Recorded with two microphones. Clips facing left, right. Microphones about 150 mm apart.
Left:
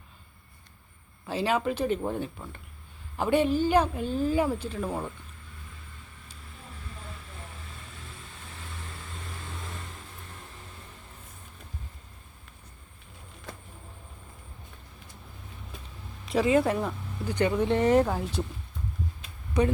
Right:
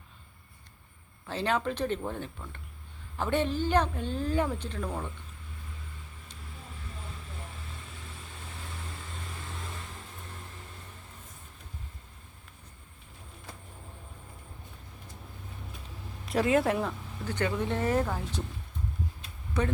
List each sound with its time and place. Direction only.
1.3 s speech: 10° left (ahead or behind)
16.3 s speech: centre (ahead or behind)
17.2 s speech: 15° left (ahead or behind)
19.6 s speech: 15° left (ahead or behind)